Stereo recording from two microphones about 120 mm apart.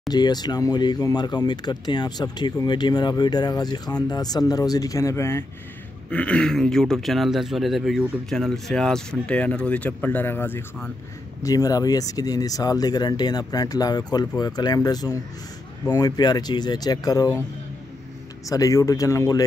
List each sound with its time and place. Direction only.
0.1 s speech: 35° left (ahead or behind)
6.0 s speech: 10° left (ahead or behind)
11.4 s speech: 30° left (ahead or behind)
18.5 s speech: 30° left (ahead or behind)